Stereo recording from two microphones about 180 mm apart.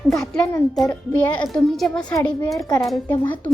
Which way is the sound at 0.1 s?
5° left (ahead or behind).